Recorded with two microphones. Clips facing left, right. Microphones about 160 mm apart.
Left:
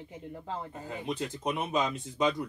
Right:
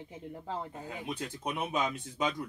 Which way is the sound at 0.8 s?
Centre (ahead or behind).